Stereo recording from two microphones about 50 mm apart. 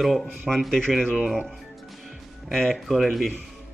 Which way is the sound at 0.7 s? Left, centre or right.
Centre.